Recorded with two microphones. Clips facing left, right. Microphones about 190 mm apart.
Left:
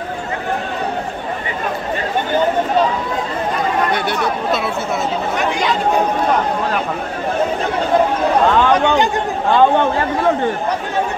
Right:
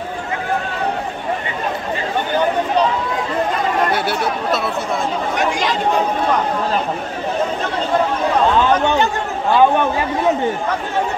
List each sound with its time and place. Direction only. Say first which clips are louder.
3.9 s speech: left 1 dB; 5° right (ahead or behind)
8.7 s speech: left 2 dB; 15° left (ahead or behind)